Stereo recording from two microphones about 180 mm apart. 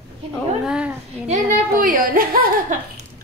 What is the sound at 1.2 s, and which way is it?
A child's voice, 45° right (ahead or behind).